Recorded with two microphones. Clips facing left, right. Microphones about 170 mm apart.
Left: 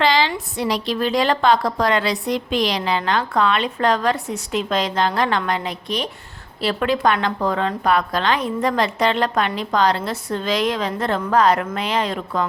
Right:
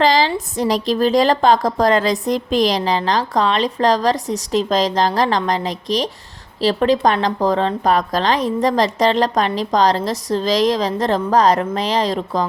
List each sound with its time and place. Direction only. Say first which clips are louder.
0.0 s a woman's voice: right 3 dB; 40° right (ahead or behind)